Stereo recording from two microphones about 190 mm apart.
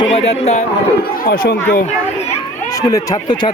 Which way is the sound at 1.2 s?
50° left (ahead or behind).